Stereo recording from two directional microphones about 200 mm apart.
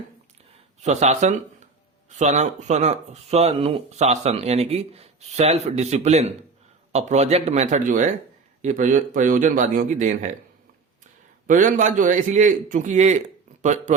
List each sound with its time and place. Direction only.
0.8 s speech: 35° right (ahead or behind)
11.4 s speech: 40° right (ahead or behind)